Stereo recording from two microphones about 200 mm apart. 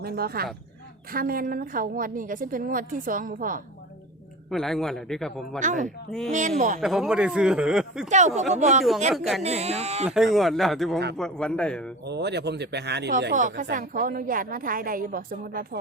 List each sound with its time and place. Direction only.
0.0 s a woman's voice: 50° right (ahead or behind)
4.4 s speech: centre (ahead or behind)
5.5 s speech: 40° right (ahead or behind)
6.1 s speech: 5° left (ahead or behind)
8.5 s speech: 35° right (ahead or behind)
9.1 s speech: centre (ahead or behind)
9.4 s speech: 35° right (ahead or behind)
10.1 s speech: centre (ahead or behind)
12.0 s speech: 55° right (ahead or behind)
13.3 s a woman's voice: 40° right (ahead or behind)